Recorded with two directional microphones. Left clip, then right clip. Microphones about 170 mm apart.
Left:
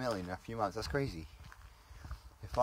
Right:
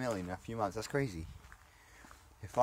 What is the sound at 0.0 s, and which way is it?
Speech, 5° right (ahead or behind).